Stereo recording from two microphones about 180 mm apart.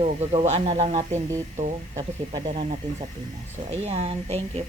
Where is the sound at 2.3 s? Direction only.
25° right (ahead or behind).